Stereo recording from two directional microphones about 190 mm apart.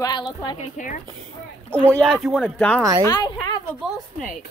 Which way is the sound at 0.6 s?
45° left (ahead or behind).